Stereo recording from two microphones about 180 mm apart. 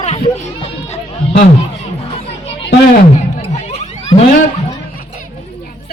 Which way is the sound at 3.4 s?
35° left (ahead or behind).